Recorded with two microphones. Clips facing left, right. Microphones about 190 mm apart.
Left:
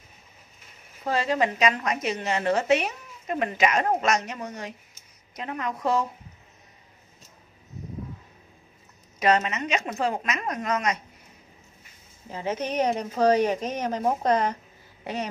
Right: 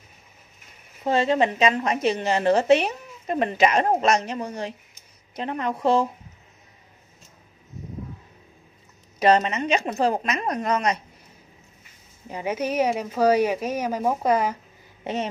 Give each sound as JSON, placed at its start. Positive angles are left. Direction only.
{"t": 1.0, "sound": "a woman's voice", "side_deg": -25}
{"t": 9.2, "sound": "a woman's voice", "side_deg": -30}
{"t": 12.3, "sound": "a woman's voice", "side_deg": -15}
{"t": 15.0, "sound": "a woman's voice", "side_deg": -20}